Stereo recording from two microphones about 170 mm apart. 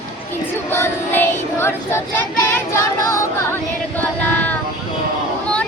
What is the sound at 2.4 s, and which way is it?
Female singing, 15° left (ahead or behind).